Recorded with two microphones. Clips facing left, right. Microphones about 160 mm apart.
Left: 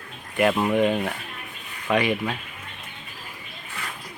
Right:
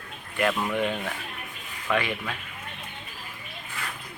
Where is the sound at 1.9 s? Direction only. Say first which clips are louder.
Left 6 dB; 20° left (ahead or behind).